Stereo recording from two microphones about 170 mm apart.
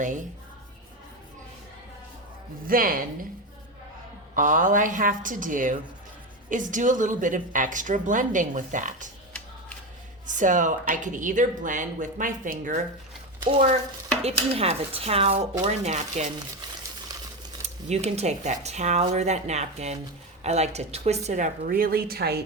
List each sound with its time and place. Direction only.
2.6 s speech: 55° right (ahead or behind)
4.4 s a woman's voice: 50° right (ahead or behind)
10.2 s a woman's voice: 50° right (ahead or behind)
14.2 s a woman's voice: 35° right (ahead or behind)
17.8 s a woman's voice: 40° right (ahead or behind); by 22.4 s 70° right (ahead or behind)